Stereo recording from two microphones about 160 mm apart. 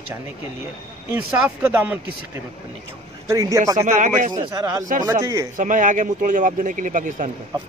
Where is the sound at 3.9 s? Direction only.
50° right (ahead or behind).